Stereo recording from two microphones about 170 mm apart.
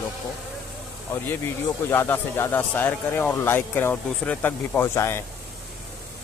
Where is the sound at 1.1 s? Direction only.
15° left (ahead or behind).